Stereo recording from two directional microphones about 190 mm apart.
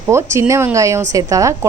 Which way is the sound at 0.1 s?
15° right (ahead or behind).